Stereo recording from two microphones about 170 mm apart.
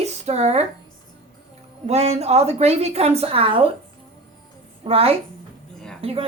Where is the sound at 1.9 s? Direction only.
40° right (ahead or behind).